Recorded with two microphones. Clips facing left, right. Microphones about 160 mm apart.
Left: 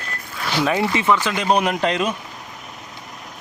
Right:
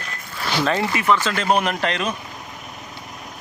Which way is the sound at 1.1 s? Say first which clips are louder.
Right 1 dB; 15° left (ahead or behind).